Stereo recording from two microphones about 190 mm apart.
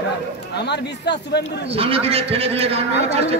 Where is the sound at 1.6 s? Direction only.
30° right (ahead or behind).